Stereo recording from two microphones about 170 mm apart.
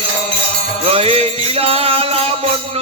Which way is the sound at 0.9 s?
35° right (ahead or behind).